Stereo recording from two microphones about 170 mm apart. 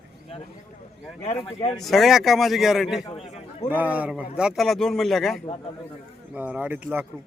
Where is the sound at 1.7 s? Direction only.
Centre (ahead or behind).